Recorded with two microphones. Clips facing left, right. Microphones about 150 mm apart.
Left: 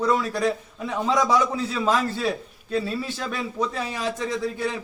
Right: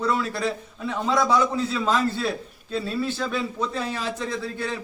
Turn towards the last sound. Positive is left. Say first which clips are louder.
# left 3 dB
turn(degrees=10)  # may be behind; listen again after turning